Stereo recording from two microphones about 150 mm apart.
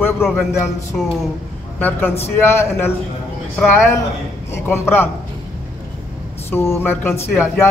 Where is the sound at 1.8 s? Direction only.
15° left (ahead or behind).